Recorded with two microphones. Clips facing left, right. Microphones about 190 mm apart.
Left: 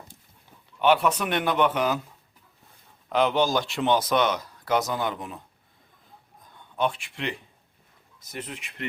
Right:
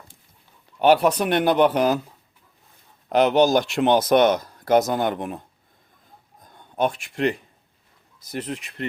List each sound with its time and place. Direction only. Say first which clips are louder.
0.8 s speech: right 4 dB; 40° right (ahead or behind)
3.1 s speech: right 5 dB; 45° right (ahead or behind)
3.5 s speech: right 5 dB; 65° right (ahead or behind)
6.4 s a sound: right 4 dB; 45° right (ahead or behind)
8.2 s speech: right 7 dB; 35° right (ahead or behind)